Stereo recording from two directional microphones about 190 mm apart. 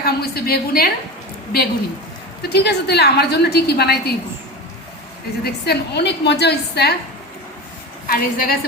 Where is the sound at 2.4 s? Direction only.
60° left (ahead or behind).